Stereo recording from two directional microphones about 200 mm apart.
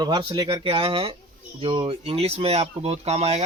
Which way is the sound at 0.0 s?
20° right (ahead or behind).